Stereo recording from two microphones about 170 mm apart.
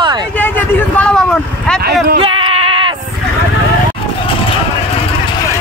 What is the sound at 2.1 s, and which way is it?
Goat, 30° right (ahead or behind).